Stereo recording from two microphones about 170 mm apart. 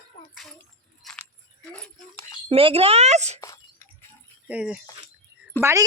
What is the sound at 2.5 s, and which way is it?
Speech, 35° right (ahead or behind).